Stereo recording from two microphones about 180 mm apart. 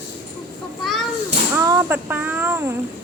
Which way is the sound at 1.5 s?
15° right (ahead or behind).